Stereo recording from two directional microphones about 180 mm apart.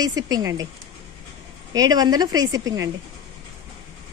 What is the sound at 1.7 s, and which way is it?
A woman's voice, 20° right (ahead or behind).